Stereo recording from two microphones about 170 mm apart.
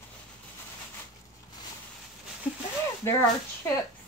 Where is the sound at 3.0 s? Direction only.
15° left (ahead or behind).